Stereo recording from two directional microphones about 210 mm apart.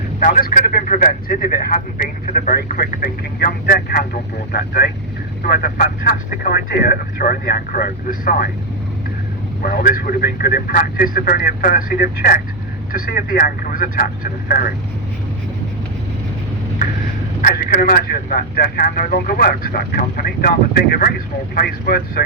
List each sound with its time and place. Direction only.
0.2 s speech: 40° left (ahead or behind)
9.6 s speech: 45° left (ahead or behind)
17.4 s speech: 45° left (ahead or behind)